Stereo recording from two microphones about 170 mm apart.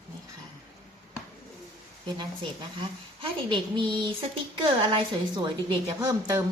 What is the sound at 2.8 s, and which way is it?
A woman's voice, 30° right (ahead or behind).